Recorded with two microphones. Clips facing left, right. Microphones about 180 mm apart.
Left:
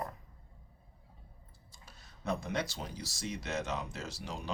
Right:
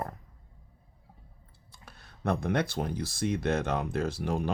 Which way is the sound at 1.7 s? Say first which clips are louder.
Right 5 dB; 60° right (ahead or behind).